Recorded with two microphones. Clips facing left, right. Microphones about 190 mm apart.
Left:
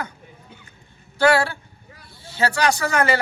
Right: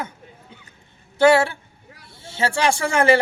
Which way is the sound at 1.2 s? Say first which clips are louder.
Right 3 dB; 25° right (ahead or behind).